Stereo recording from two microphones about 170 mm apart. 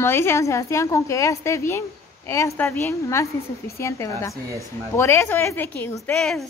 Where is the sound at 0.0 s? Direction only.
15° left (ahead or behind).